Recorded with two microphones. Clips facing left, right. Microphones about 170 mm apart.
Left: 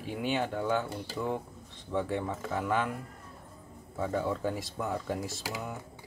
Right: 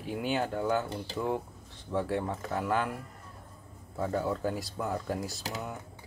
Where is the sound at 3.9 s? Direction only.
Centre (ahead or behind).